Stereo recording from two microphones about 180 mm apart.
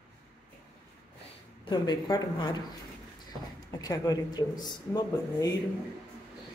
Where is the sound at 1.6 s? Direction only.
25° left (ahead or behind).